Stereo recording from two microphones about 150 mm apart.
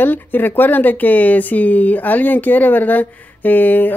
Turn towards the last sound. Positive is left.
turn(degrees=10)  # may be behind; listen again after turning